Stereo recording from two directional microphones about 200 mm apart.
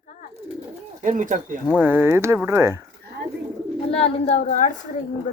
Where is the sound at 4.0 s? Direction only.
35° left (ahead or behind).